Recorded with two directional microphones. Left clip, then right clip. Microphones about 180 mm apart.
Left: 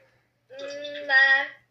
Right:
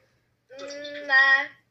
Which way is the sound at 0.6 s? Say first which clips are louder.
Left 2 dB; centre (ahead or behind).